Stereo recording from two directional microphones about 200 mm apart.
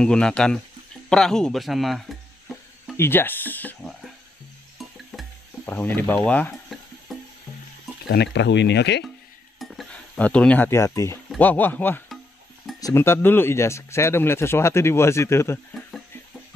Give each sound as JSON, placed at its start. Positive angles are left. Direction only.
{"t": 0.0, "sound": "speech", "side_deg": 5}
{"t": 3.0, "sound": "a sound", "side_deg": 10}
{"t": 5.1, "sound": "music", "side_deg": 0}
{"t": 5.7, "sound": "speech", "side_deg": 10}
{"t": 7.1, "sound": "music", "side_deg": 0}
{"t": 8.1, "sound": "speech", "side_deg": 60}
{"t": 9.6, "sound": "speech", "side_deg": 0}